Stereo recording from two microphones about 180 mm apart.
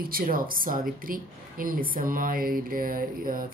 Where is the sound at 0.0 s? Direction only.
55° right (ahead or behind).